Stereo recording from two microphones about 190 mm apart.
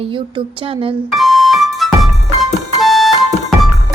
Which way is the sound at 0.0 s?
25° right (ahead or behind).